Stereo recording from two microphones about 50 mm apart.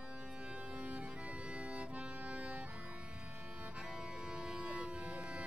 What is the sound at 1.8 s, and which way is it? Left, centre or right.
Accordion, right.